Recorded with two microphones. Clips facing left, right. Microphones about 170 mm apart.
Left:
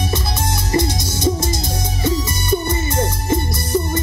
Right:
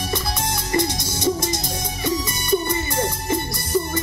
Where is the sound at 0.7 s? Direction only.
25° left (ahead or behind).